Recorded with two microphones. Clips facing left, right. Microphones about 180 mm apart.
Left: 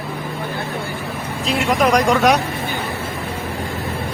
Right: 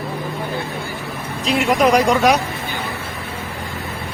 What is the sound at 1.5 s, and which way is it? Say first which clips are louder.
Speech: right 2 dB; centre (ahead or behind).